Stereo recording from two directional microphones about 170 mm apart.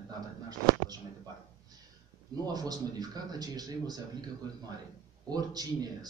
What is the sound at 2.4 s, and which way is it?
A man's voice, 20° right (ahead or behind).